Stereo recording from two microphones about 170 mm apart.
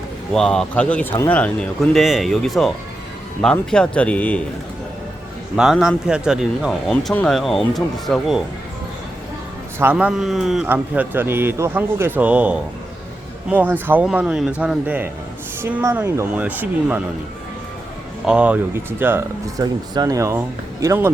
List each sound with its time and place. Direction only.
0.3 s speech: 5° left (ahead or behind)
5.5 s speech: centre (ahead or behind)
9.7 s a man's voice: 10° right (ahead or behind)
18.3 s a man's voice: 5° right (ahead or behind)